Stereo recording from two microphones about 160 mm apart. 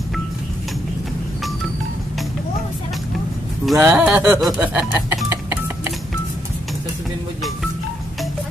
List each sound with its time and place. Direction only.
3.6 s speech: 5° right (ahead or behind)
5.1 s doorbell: 15° right (ahead or behind)